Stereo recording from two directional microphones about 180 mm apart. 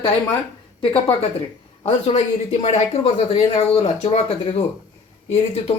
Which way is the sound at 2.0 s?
35° left (ahead or behind).